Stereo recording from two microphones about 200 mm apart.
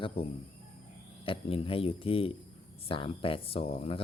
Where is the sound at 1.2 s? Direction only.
25° left (ahead or behind).